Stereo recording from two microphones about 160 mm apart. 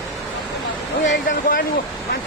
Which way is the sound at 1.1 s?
65° left (ahead or behind).